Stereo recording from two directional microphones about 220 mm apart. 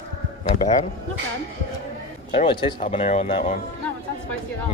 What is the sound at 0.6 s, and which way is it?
Speech, 30° left (ahead or behind).